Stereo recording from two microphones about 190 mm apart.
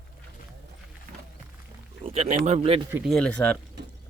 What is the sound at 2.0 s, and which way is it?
Speech, 35° right (ahead or behind).